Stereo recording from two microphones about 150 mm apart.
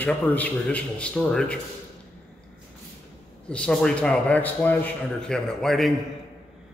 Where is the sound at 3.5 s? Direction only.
5° left (ahead or behind).